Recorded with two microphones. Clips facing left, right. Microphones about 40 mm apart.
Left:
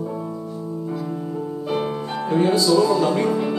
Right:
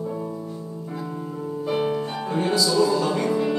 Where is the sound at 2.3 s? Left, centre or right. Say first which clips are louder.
Left 5 dB; left.